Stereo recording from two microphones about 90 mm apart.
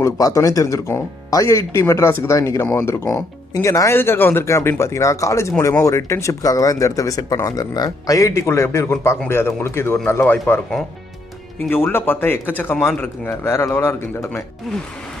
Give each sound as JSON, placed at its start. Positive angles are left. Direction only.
{"t": 0.0, "sound": "speech", "side_deg": 35}
{"t": 11.7, "sound": "speech", "side_deg": 25}